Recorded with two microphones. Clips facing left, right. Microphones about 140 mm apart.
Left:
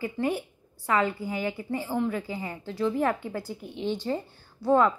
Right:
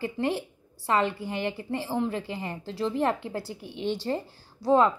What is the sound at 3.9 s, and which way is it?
Speech, 30° right (ahead or behind).